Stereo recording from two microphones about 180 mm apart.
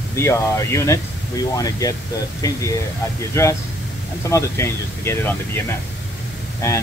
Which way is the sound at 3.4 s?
15° left (ahead or behind).